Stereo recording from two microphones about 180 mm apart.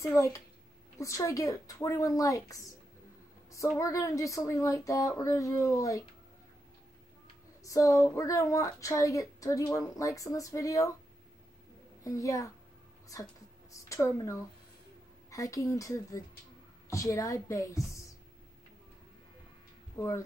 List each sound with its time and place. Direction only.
0.0 s speech: 15° left (ahead or behind)
3.7 s speech: 15° left (ahead or behind)
7.6 s speech: 20° left (ahead or behind)
12.0 s speech: 20° left (ahead or behind)
20.0 s speech: 15° left (ahead or behind)